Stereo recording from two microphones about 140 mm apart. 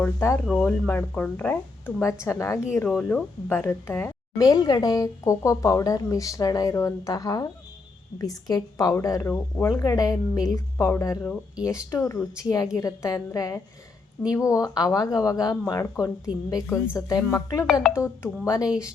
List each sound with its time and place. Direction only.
0.0 s a woman's voice: 20° left (ahead or behind)
2.8 s a woman's voice: 10° left (ahead or behind); by 18.7 s 25° left (ahead or behind)